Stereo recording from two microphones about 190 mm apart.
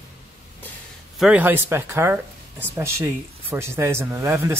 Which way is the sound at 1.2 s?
5° right (ahead or behind).